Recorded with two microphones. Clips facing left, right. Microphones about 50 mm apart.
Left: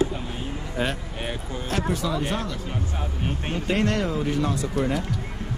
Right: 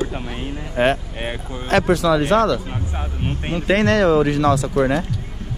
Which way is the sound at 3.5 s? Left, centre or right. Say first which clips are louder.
Right 8 dB; right.